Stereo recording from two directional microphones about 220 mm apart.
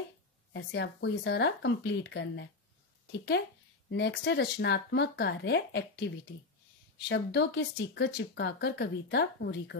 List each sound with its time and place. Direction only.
0.5 s speech: 55° left (ahead or behind)